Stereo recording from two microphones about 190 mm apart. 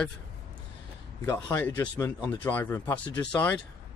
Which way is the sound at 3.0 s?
20° left (ahead or behind).